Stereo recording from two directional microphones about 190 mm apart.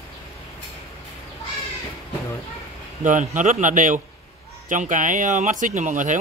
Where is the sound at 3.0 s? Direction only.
40° right (ahead or behind).